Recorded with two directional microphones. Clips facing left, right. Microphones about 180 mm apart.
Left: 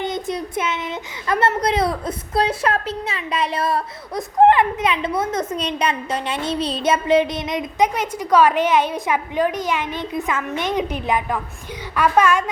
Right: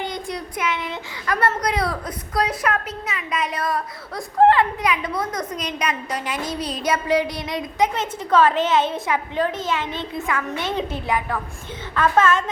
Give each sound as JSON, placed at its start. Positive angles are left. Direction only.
{"t": 0.0, "sound": "a child's voice", "side_deg": 20}